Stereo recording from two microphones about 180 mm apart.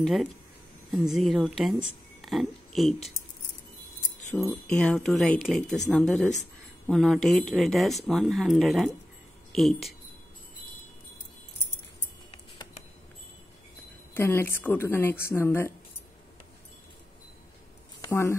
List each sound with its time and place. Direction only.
0.0 s speech: centre (ahead or behind)
4.3 s speech: 10° left (ahead or behind)
14.1 s speech: 15° left (ahead or behind)
18.0 s speech: 15° left (ahead or behind)